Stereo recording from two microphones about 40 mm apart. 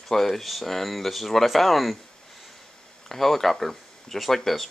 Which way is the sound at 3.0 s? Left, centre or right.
Centre.